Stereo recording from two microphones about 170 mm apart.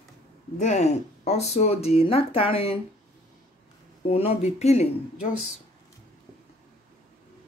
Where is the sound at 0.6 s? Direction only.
40° left (ahead or behind).